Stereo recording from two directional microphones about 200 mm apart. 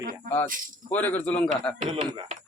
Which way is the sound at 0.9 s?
10° left (ahead or behind).